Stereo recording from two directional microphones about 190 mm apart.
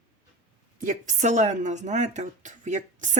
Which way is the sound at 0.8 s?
40° right (ahead or behind).